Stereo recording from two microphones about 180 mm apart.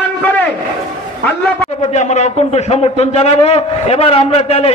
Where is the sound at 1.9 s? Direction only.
40° left (ahead or behind).